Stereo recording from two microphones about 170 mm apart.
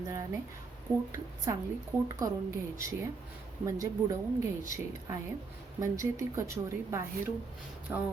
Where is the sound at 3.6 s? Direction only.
20° right (ahead or behind).